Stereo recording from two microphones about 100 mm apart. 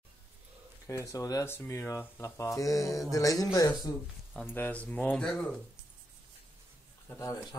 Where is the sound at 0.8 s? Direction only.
30° left (ahead or behind).